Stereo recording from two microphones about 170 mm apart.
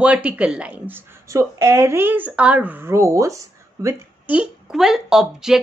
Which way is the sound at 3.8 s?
5° right (ahead or behind).